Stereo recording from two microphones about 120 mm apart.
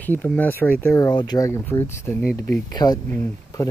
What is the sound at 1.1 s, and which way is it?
Speech, 35° left (ahead or behind).